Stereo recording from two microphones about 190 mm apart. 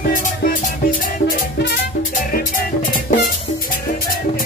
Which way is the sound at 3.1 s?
40° left (ahead or behind).